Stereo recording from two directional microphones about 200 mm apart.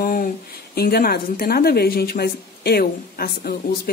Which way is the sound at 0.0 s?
45° left (ahead or behind).